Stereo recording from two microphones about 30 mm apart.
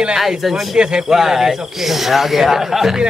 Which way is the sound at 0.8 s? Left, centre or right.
Right.